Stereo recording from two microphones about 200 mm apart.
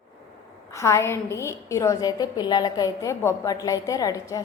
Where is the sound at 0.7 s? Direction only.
15° left (ahead or behind).